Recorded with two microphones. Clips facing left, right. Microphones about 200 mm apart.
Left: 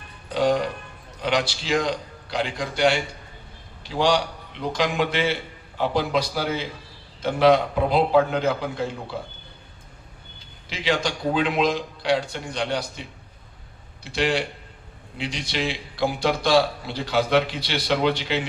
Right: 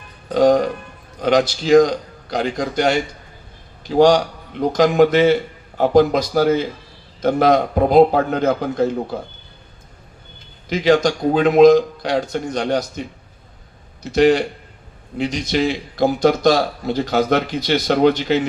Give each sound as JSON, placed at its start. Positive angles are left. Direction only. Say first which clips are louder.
{"t": 0.3, "sound": "a man's voice", "louder": "right 7 dB", "side_deg": -45}
{"t": 10.7, "sound": "a man's voice", "louder": "right 10 dB", "side_deg": -45}